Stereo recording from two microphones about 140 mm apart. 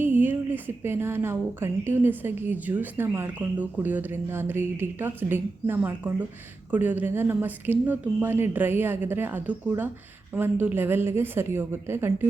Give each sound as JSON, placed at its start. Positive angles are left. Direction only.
{"t": 0.0, "sound": "a woman's voice", "side_deg": -15}